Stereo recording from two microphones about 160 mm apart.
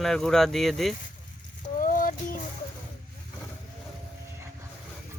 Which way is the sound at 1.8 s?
55° left (ahead or behind).